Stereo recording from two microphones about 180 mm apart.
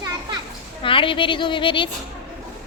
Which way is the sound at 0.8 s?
30° left (ahead or behind).